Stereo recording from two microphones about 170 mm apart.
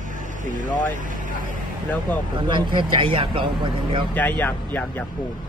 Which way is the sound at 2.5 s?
30° right (ahead or behind).